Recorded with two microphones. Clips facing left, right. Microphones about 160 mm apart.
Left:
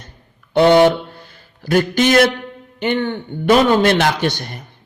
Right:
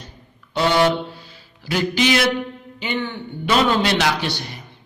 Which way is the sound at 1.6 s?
50° left (ahead or behind).